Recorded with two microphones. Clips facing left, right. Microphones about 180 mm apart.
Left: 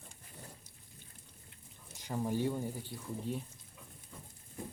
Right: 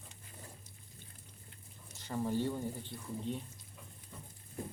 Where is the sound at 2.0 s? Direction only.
15° left (ahead or behind).